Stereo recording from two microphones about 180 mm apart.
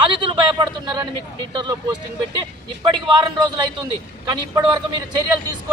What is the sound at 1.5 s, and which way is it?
A man's voice, 25° right (ahead or behind).